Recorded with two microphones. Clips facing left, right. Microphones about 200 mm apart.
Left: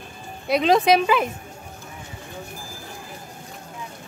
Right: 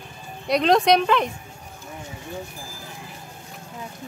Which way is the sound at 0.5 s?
Centre (ahead or behind).